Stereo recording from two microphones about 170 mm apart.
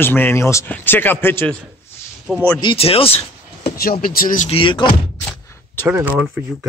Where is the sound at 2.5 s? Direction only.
30° left (ahead or behind).